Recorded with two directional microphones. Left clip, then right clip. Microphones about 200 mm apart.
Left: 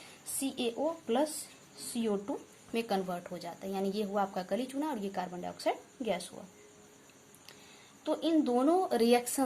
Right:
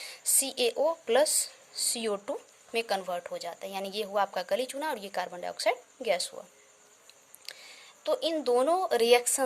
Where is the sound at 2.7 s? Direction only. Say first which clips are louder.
Right 3 dB; 40° right (ahead or behind).